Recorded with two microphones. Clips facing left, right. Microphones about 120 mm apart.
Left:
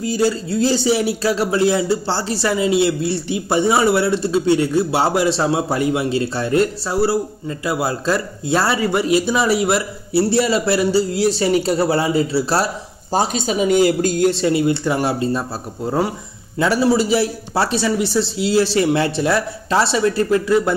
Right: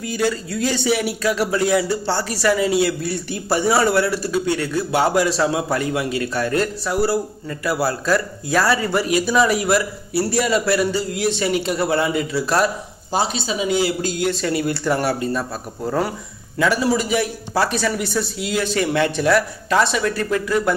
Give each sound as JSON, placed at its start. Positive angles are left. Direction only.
{"t": 0.0, "sound": "speech", "side_deg": 30}
{"t": 13.1, "sound": "speech", "side_deg": 45}
{"t": 14.3, "sound": "speech", "side_deg": 25}
{"t": 16.5, "sound": "speech", "side_deg": 30}